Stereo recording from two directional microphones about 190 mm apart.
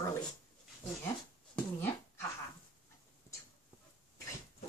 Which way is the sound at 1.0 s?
10° left (ahead or behind).